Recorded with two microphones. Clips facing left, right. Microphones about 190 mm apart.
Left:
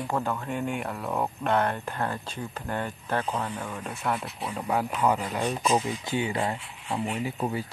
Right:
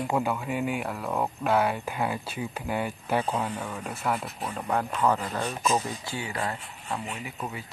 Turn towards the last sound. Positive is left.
turn(degrees=35)  # may be behind; listen again after turning